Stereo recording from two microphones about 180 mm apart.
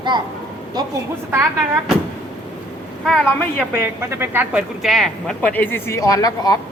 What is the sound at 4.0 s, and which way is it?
A woman's voice, 15° right (ahead or behind).